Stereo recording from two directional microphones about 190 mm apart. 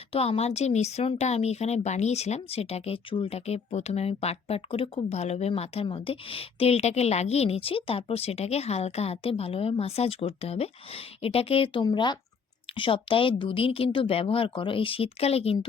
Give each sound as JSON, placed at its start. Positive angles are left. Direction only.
{"t": 0.1, "sound": "speech", "side_deg": 30}